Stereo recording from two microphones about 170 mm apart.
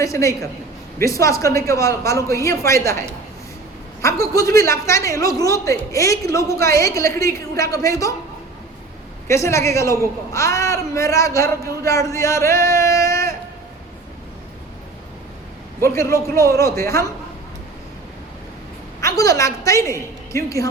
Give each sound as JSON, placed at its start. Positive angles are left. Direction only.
{"t": 0.0, "sound": "a man's voice", "side_deg": 20}
{"t": 4.0, "sound": "a man's voice", "side_deg": 20}
{"t": 9.2, "sound": "a man's voice", "side_deg": 15}
{"t": 15.8, "sound": "a man's voice", "side_deg": 15}
{"t": 19.0, "sound": "a woman's voice", "side_deg": 20}